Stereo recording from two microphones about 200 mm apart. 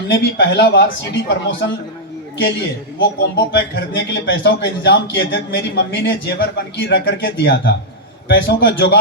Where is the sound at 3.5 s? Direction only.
60° left (ahead or behind).